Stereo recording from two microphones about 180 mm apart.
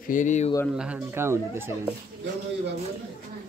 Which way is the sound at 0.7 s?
5° right (ahead or behind).